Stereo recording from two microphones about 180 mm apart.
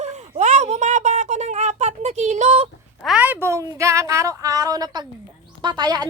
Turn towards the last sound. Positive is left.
turn(degrees=-25)  # may be behind; listen again after turning